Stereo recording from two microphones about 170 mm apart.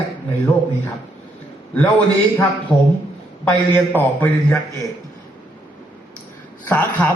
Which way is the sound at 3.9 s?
10° left (ahead or behind).